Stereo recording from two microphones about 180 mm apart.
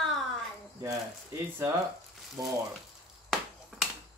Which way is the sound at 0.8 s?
15° right (ahead or behind).